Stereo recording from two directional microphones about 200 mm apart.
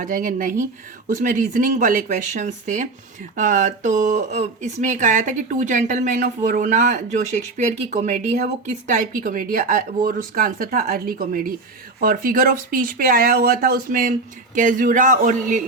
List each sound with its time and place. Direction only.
0.0 s speech: 40° right (ahead or behind)